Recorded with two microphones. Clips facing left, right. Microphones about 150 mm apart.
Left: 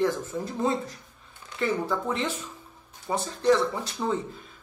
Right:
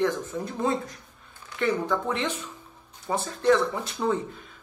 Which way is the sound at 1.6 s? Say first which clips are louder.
Right 1 dB; 5° left (ahead or behind).